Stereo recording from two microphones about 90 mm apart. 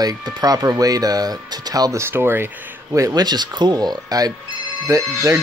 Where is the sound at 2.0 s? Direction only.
25° right (ahead or behind).